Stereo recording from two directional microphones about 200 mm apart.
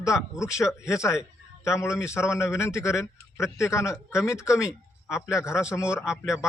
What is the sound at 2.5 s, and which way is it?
A man's voice, 15° left (ahead or behind).